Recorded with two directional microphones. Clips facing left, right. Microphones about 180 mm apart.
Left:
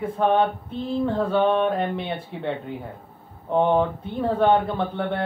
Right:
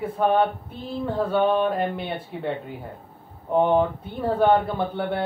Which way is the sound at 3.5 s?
10° right (ahead or behind).